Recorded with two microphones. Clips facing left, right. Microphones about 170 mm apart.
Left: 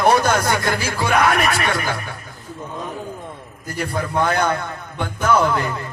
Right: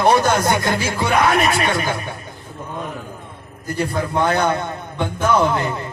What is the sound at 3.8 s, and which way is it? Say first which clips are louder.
Speech: right 1 dB; 20° right (ahead or behind).